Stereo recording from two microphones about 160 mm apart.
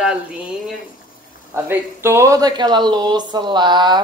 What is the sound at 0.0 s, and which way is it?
Speech, 5° right (ahead or behind).